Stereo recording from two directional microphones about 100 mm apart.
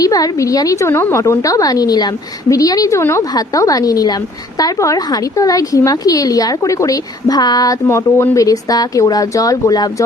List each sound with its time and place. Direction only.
0.0 s a woman's voice: 40° left (ahead or behind)
7.9 s speech: 25° left (ahead or behind)
8.4 s a woman's voice: 40° left (ahead or behind)